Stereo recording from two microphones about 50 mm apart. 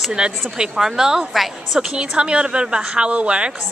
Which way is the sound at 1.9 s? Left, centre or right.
Centre.